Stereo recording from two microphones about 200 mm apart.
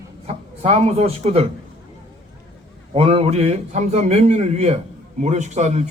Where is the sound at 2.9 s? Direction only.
30° right (ahead or behind).